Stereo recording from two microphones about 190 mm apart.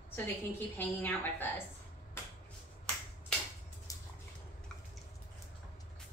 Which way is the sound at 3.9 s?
15° left (ahead or behind).